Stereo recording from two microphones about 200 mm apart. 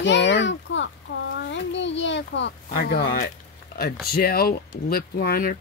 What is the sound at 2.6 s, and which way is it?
Speech, 50° left (ahead or behind).